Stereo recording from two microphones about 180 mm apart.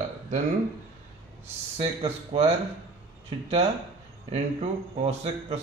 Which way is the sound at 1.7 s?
35° right (ahead or behind).